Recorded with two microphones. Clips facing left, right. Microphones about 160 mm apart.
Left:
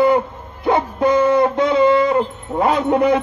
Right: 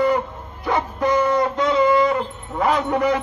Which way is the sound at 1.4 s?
55° left (ahead or behind).